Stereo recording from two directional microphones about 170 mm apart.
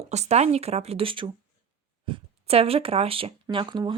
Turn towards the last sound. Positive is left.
turn(degrees=-25)  # may be behind; listen again after turning